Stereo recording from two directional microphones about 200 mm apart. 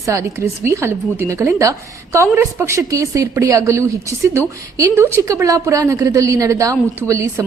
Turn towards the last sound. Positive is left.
turn(degrees=-15)  # may be behind; listen again after turning